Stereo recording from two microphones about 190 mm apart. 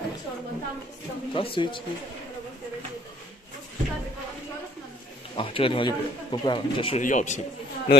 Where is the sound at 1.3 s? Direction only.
30° left (ahead or behind).